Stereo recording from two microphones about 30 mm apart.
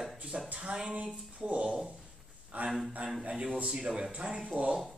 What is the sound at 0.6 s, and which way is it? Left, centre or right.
Speech, right.